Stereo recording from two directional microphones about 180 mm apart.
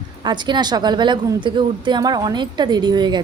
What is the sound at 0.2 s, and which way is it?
A woman's voice, 25° right (ahead or behind).